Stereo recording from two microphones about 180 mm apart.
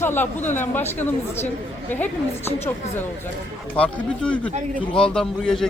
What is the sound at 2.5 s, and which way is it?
Speech, 10° left (ahead or behind).